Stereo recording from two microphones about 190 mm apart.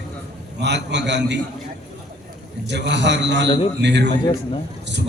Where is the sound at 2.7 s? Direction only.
65° right (ahead or behind).